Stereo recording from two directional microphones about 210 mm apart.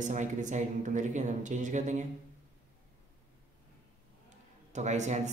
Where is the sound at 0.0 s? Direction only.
35° right (ahead or behind).